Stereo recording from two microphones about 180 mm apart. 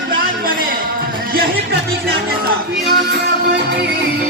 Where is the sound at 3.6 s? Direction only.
70° right (ahead or behind).